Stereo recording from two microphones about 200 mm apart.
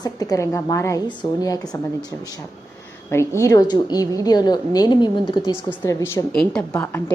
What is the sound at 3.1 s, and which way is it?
A woman's voice, 15° left (ahead or behind).